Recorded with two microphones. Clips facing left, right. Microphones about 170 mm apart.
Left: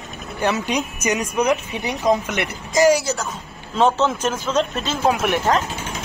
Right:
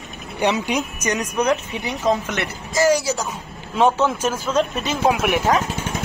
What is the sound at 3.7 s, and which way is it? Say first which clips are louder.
A man's voice: even; 10° right (ahead or behind).